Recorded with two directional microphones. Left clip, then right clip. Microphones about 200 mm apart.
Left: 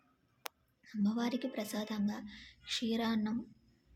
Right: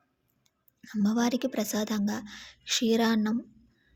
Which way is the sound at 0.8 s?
30° right (ahead or behind).